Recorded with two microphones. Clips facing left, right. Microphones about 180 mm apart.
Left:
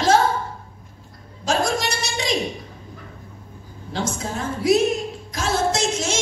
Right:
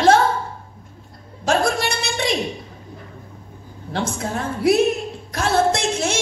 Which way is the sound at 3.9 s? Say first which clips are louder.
Right 2 dB; 60° right (ahead or behind).